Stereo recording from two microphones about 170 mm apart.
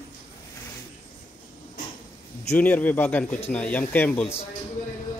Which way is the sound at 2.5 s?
10° left (ahead or behind).